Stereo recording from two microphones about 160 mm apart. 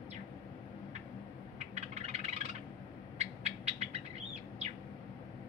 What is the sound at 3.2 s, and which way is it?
Bird, 45° right (ahead or behind).